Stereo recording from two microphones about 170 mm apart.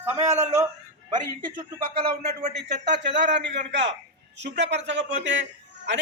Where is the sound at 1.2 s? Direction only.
55° right (ahead or behind).